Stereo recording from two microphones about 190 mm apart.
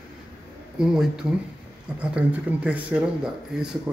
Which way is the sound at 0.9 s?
5° right (ahead or behind).